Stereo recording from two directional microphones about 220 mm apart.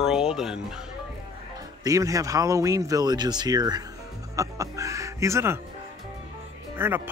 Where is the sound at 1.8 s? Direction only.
15° right (ahead or behind).